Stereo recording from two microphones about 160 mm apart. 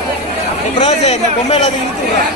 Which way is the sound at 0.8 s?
40° left (ahead or behind).